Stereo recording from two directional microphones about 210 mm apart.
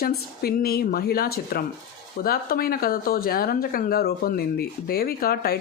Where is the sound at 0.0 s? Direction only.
45° left (ahead or behind).